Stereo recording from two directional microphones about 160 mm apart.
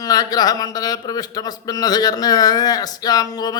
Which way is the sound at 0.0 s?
25° left (ahead or behind).